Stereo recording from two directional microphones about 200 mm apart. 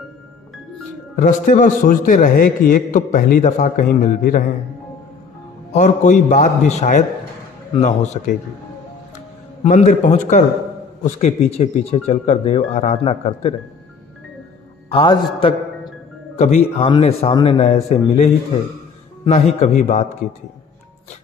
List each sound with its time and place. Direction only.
1.1 s a man's voice: 40° left (ahead or behind)
5.7 s a man's voice: 35° left (ahead or behind)
9.6 s a man's voice: 35° left (ahead or behind)
14.9 s a man's voice: 25° left (ahead or behind)
19.6 s a man's voice: 35° left (ahead or behind)